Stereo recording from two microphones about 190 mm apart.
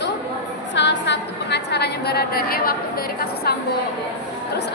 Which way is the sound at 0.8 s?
65° left (ahead or behind).